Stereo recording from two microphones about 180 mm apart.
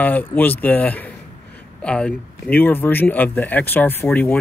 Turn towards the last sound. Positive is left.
turn(degrees=10)  # may be behind; listen again after turning